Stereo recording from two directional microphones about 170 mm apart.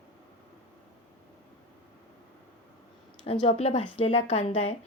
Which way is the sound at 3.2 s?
35° left (ahead or behind).